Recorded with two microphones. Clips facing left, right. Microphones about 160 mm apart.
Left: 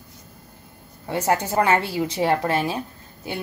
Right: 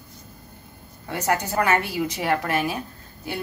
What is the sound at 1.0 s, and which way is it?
A woman's voice, 25° left (ahead or behind).